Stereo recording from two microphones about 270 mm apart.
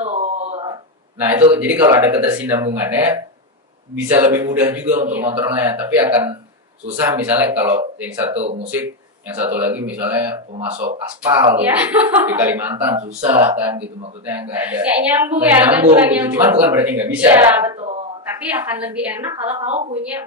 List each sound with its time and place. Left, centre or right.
0.0 s a sound: right
1.6 s a woman's voice: centre
8.3 s speech: right
8.6 s a woman's voice: centre
10.5 s speech: right
11.2 s a woman's voice: centre
19.6 s speech: right